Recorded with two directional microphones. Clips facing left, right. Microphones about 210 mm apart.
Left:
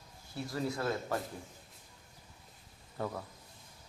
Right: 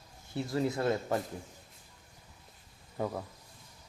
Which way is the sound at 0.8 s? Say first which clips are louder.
Right 4 dB; 25° right (ahead or behind).